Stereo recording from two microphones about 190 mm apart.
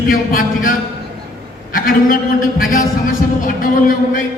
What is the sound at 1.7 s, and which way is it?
A woman's voice, 45° left (ahead or behind).